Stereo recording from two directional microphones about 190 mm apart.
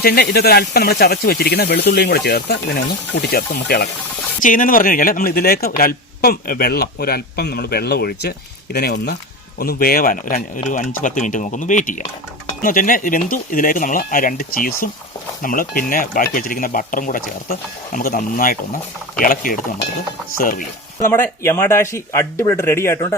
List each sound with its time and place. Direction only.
0.0 s a man's voice: 55° left (ahead or behind)
21.0 s speech: 15° left (ahead or behind)